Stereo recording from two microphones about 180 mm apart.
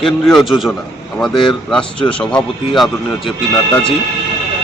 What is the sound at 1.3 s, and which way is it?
Speech, 30° left (ahead or behind).